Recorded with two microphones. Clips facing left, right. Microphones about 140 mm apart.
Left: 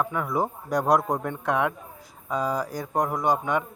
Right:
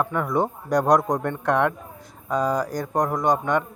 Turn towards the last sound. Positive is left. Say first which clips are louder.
# right 3 dB
turn(degrees=5)  # may be behind; listen again after turning